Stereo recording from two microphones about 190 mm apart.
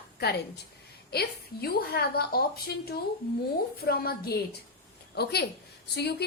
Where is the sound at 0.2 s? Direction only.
60° left (ahead or behind).